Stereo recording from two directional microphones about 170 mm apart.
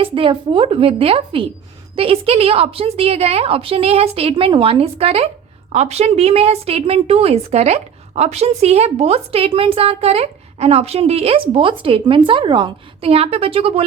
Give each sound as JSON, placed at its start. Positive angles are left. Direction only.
{"t": 0.0, "sound": "a woman's voice", "side_deg": -30}